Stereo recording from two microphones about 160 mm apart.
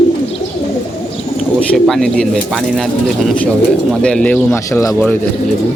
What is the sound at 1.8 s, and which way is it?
Speech, 5° left (ahead or behind).